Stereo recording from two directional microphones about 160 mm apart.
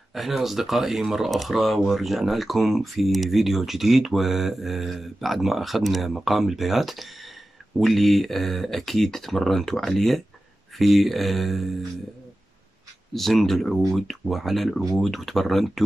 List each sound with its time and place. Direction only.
0.1 s speech: centre (ahead or behind)
13.1 s speech: centre (ahead or behind)